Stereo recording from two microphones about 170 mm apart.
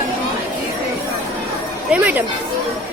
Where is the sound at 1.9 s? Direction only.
10° right (ahead or behind).